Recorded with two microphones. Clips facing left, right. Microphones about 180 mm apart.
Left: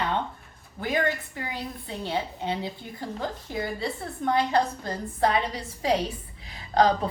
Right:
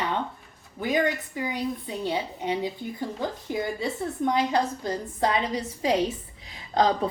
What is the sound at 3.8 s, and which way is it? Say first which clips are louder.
A woman's voice: right 3 dB; 20° right (ahead or behind).